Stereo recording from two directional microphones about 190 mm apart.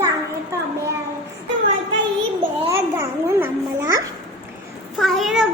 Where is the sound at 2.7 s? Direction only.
15° right (ahead or behind).